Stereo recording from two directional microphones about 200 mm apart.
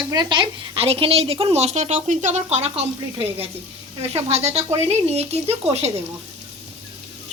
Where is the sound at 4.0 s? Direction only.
30° right (ahead or behind).